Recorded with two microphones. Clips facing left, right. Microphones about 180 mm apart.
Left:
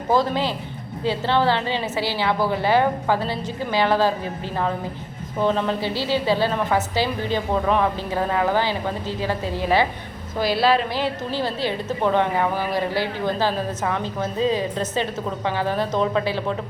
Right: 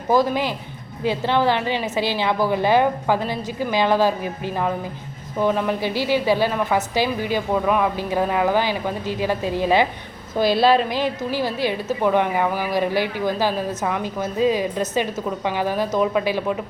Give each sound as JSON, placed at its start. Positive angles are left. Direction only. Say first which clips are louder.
{"t": 0.1, "sound": "a woman's voice", "louder": "right 2 dB", "side_deg": -15}